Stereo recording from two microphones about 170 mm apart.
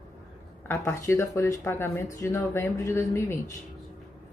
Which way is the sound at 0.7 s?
15° left (ahead or behind).